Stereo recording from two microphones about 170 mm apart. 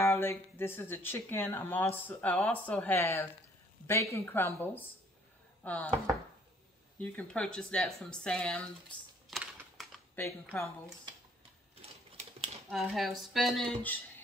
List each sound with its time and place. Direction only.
0.0 s speech: 15° left (ahead or behind)
7.0 s speech: 5° left (ahead or behind)
9.3 s typing: 5° right (ahead or behind)
10.5 s speech: 10° left (ahead or behind)
11.8 s typing: 35° right (ahead or behind)
12.6 s speech: centre (ahead or behind)